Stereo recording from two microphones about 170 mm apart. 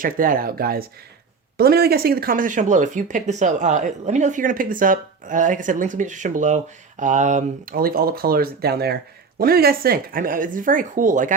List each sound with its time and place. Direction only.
0.0 s speech: 55° right (ahead or behind)